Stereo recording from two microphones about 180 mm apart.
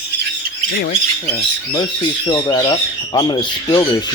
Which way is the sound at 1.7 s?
25° left (ahead or behind).